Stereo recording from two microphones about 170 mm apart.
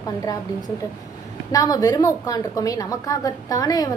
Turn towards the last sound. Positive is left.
turn(degrees=20)  # may be behind; listen again after turning